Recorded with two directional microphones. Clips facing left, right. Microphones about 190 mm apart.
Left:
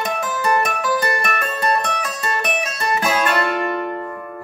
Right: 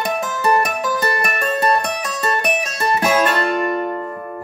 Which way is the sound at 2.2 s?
35° right (ahead or behind).